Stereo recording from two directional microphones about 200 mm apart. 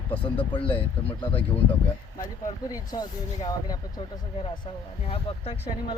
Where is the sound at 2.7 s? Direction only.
15° left (ahead or behind).